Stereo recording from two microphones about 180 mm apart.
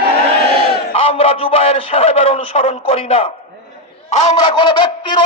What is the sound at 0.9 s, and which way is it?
A man's voice, 35° left (ahead or behind).